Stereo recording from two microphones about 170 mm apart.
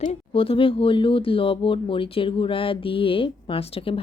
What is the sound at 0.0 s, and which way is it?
Speech, 35° left (ahead or behind).